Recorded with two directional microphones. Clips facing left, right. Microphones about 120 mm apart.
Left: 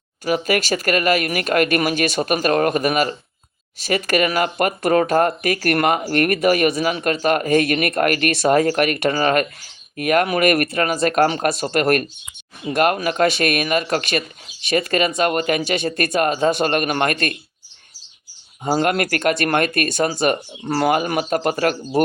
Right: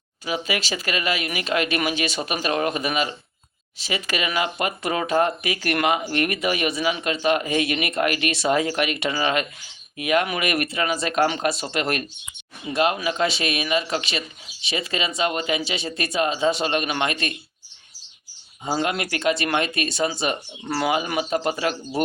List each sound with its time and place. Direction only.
0.3 s speech: 50° left (ahead or behind)
18.6 s speech: 50° left (ahead or behind)